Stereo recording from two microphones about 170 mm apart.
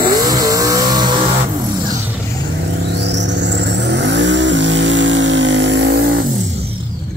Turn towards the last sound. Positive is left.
turn(degrees=-70)  # may be behind; listen again after turning